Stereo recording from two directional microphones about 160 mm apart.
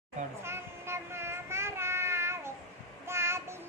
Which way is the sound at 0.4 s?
15° right (ahead or behind).